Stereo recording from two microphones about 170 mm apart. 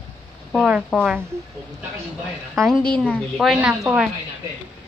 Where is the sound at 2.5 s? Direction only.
Centre (ahead or behind).